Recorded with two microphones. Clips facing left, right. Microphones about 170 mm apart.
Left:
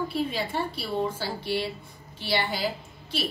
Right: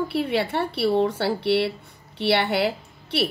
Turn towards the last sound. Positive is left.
turn(degrees=-70)  # may be behind; listen again after turning